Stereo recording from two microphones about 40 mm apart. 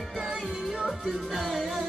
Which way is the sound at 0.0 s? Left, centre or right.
Centre.